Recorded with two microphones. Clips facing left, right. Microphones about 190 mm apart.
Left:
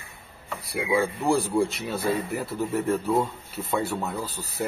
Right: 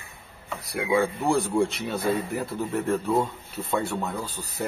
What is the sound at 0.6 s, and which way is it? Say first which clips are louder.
Speech: right 1 dB; centre (ahead or behind).